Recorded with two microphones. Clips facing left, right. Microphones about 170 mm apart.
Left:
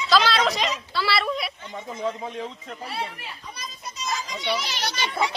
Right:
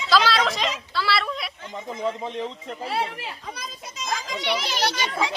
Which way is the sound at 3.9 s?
90° right.